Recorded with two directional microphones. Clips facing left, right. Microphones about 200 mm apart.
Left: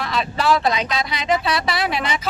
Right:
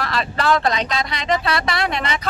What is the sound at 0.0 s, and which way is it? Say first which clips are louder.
Speech: even; centre (ahead or behind).